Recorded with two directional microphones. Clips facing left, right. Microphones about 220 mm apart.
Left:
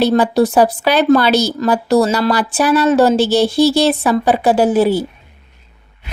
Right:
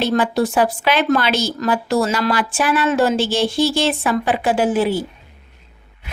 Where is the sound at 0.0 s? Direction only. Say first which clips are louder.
Left 5 dB; 35° left (ahead or behind).